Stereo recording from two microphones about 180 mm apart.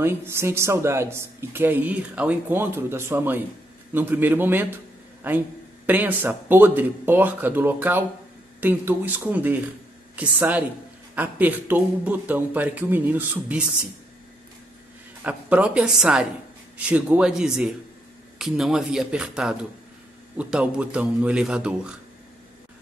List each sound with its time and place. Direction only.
0.0 s speech: 15° right (ahead or behind)
15.2 s a man's voice: 5° right (ahead or behind)